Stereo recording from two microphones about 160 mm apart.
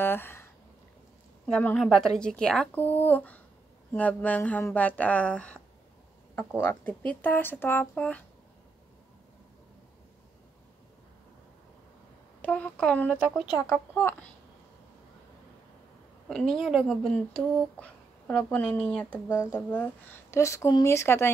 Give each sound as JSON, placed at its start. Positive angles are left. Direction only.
{"t": 0.0, "sound": "a sound", "side_deg": 15}
{"t": 1.4, "sound": "a woman's voice", "side_deg": 10}
{"t": 12.4, "sound": "speech", "side_deg": 10}
{"t": 16.3, "sound": "a woman's voice", "side_deg": 5}
{"t": 19.2, "sound": "speech", "side_deg": 20}